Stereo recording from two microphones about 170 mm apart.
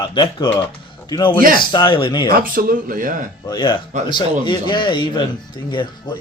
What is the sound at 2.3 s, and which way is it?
Speech, 60° right (ahead or behind).